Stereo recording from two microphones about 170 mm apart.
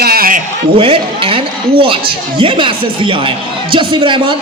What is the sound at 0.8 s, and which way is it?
A man's voice, 30° right (ahead or behind).